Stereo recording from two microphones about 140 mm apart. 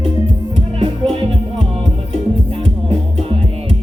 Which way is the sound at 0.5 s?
40° right (ahead or behind).